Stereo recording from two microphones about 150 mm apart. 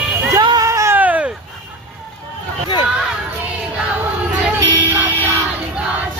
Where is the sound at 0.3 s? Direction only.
25° right (ahead or behind).